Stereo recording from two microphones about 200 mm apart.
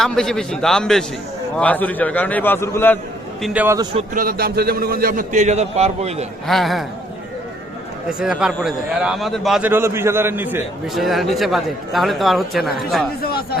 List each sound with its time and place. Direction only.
0.0 s a man's voice: centre (ahead or behind)
3.4 s a man's voice: 10° right (ahead or behind)
3.9 s a man's voice: 45° right (ahead or behind)
6.5 s a man's voice: centre (ahead or behind)
8.2 s a man's voice: 5° right (ahead or behind)
13.2 s music: 50° left (ahead or behind)